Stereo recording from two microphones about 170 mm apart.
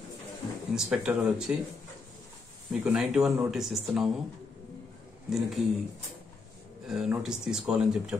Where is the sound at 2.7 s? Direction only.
Centre (ahead or behind).